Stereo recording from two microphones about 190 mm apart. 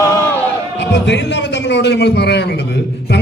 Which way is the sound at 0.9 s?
65° left (ahead or behind).